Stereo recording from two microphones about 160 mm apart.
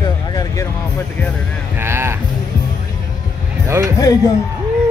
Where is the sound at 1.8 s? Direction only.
15° right (ahead or behind).